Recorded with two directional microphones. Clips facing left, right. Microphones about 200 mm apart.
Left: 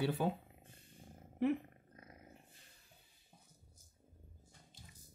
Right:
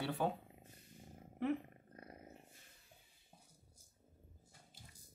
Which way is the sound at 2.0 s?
35° right (ahead or behind).